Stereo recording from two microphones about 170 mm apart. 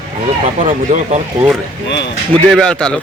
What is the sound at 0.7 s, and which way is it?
Speech, 50° right (ahead or behind).